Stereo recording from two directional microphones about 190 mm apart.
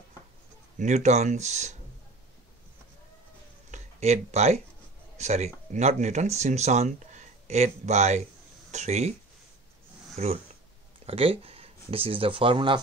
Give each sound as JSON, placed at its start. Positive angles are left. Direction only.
{"t": 0.7, "sound": "speech", "side_deg": -35}
{"t": 3.7, "sound": "speech", "side_deg": -35}
{"t": 10.1, "sound": "speech", "side_deg": -35}